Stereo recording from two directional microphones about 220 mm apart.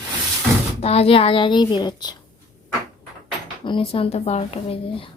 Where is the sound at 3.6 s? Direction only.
25° left (ahead or behind).